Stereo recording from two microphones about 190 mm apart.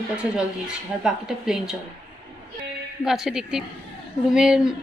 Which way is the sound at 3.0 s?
5° right (ahead or behind).